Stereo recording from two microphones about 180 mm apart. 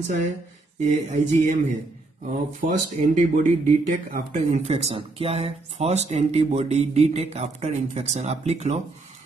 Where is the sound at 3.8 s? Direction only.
40° right (ahead or behind).